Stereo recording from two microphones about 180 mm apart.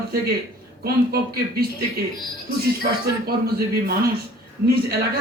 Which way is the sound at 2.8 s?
60° right (ahead or behind).